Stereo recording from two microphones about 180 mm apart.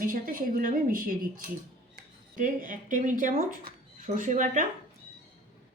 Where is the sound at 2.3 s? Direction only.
45° right (ahead or behind).